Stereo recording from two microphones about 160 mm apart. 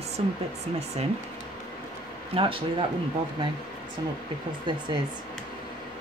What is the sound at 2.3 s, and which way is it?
Speech, 35° right (ahead or behind).